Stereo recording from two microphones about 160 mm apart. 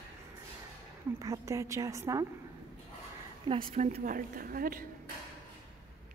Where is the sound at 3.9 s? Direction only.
60° right (ahead or behind).